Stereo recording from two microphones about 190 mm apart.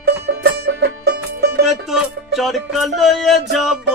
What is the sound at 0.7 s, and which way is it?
Music, 60° right (ahead or behind).